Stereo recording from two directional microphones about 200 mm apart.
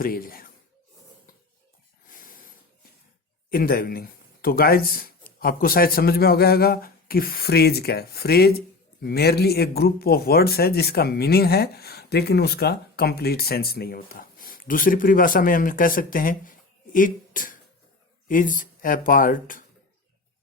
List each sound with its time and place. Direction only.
0.0 s speech: 45° left (ahead or behind)
2.0 s snort: 45° left (ahead or behind)
3.5 s speech: 45° left (ahead or behind)